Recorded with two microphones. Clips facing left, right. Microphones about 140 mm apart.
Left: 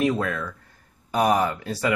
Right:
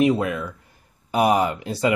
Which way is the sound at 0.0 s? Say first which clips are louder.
Right 4 dB; 15° right (ahead or behind).